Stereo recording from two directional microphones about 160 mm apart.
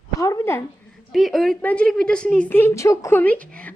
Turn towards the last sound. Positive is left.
turn(degrees=10)  # may be behind; listen again after turning